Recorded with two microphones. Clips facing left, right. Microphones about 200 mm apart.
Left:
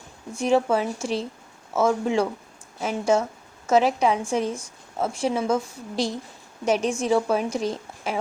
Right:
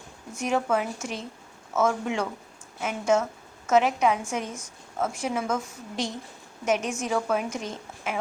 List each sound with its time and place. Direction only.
0.3 s a woman's voice: 30° left (ahead or behind)